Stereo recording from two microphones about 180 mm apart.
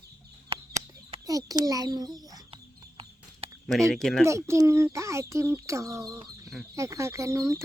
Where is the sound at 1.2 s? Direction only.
20° right (ahead or behind).